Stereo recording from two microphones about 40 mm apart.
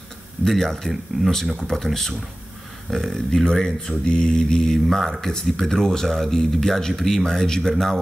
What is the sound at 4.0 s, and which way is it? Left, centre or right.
Mantra, centre.